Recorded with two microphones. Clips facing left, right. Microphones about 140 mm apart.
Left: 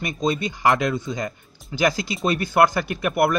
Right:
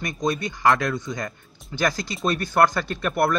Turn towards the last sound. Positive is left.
turn(degrees=10)  # may be behind; listen again after turning